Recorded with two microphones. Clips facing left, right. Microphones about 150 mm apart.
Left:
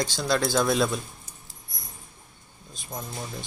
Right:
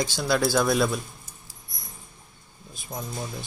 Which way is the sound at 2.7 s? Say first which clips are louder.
Right 2 dB; 5° right (ahead or behind).